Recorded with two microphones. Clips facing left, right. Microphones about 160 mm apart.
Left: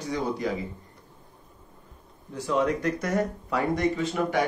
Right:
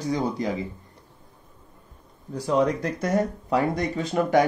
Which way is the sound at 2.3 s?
35° right (ahead or behind).